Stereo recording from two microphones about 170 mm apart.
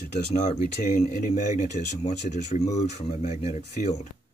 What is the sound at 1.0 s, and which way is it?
Speech, 45° left (ahead or behind).